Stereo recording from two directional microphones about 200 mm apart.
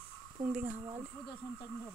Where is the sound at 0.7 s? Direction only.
20° right (ahead or behind).